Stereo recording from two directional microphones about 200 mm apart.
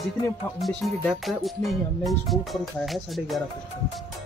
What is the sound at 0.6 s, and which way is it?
Music, centre (ahead or behind).